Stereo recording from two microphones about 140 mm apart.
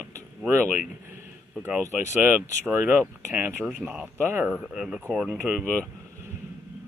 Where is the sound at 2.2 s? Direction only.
15° right (ahead or behind).